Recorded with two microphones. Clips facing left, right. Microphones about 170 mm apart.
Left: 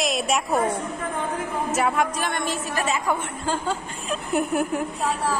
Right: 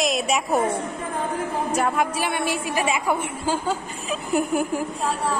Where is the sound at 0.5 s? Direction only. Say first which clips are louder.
Right 2 dB; 25° right (ahead or behind).